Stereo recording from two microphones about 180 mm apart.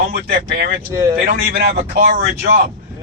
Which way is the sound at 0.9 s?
15° right (ahead or behind).